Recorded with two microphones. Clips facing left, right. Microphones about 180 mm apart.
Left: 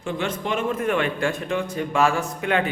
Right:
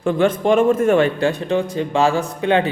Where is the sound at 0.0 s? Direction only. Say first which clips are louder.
Right 10 dB; 55° right (ahead or behind).